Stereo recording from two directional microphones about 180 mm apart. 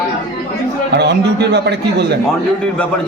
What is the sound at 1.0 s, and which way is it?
A man's voice, 70° right (ahead or behind).